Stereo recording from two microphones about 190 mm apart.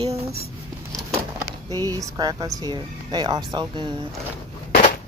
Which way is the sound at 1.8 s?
20° right (ahead or behind).